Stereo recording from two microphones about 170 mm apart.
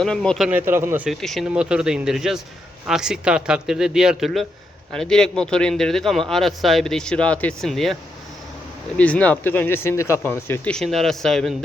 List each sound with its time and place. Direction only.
0.0 s a man's voice: 5° left (ahead or behind); by 1.1 s 10° right (ahead or behind)
1.2 s a man's voice: centre (ahead or behind)
9.0 s speech: 10° left (ahead or behind)